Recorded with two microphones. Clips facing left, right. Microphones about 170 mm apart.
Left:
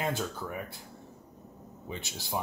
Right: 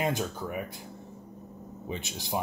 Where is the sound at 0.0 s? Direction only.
15° right (ahead or behind).